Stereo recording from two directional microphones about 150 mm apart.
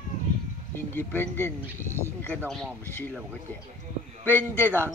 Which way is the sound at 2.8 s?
15° left (ahead or behind).